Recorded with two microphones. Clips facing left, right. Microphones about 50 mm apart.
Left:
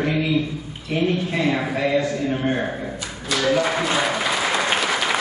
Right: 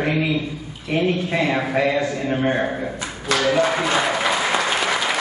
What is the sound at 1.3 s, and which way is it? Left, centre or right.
A man's voice, right.